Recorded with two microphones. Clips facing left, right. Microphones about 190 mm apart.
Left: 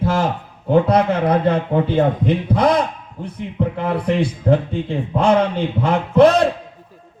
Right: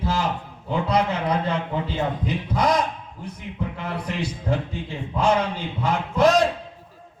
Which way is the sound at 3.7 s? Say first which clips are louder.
Left 12 dB; 55° left (ahead or behind).